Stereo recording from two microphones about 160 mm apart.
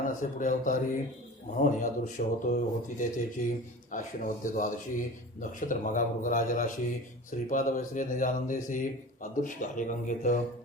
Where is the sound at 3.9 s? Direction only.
55° left (ahead or behind).